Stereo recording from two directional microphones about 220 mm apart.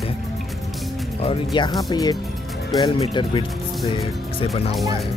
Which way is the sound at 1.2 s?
25° left (ahead or behind).